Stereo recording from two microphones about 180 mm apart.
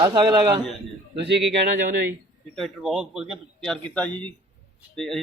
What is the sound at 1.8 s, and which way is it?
Speech, 55° right (ahead or behind).